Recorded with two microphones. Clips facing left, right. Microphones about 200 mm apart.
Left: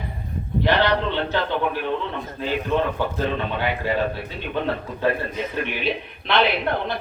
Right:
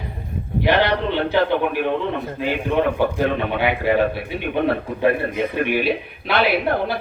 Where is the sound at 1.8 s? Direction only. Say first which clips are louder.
Right 5 dB; 55° right (ahead or behind).